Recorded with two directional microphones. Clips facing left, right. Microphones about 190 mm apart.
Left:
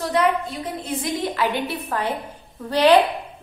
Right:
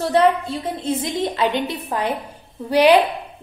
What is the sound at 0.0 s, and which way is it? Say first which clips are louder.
A woman's voice: right 4 dB; 30° right (ahead or behind).